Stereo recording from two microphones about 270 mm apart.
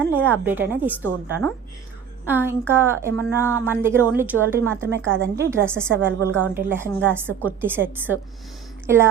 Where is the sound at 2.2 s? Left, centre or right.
Centre.